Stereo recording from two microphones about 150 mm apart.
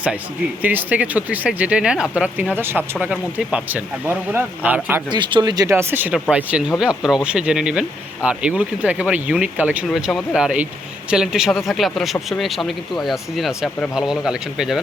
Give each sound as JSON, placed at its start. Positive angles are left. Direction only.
{"t": 0.6, "sound": "speech", "side_deg": -10}
{"t": 5.1, "sound": "speech", "side_deg": -30}